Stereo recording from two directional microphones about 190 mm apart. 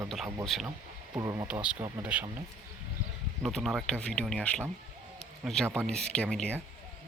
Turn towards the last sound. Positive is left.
turn(degrees=5)  # may be behind; listen again after turning